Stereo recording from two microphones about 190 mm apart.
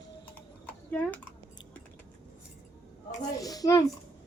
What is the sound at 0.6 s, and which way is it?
Typing, 10° left (ahead or behind).